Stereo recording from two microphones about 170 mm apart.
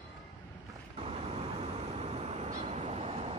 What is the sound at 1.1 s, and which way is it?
Vehicle, 35° right (ahead or behind).